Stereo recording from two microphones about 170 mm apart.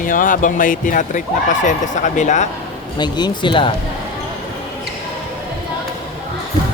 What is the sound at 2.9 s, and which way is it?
Speech, 25° left (ahead or behind).